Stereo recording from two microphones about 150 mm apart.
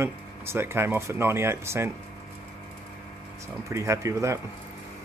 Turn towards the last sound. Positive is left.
turn(degrees=-20)  # may be behind; listen again after turning